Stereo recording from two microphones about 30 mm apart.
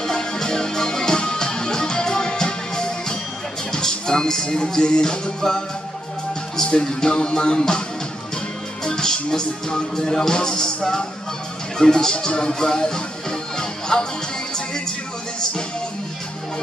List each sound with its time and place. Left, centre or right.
0.0 s music: left
3.7 s speech: left
6.5 s speech: left
7.1 s music: left
7.3 s music: left
8.8 s music: centre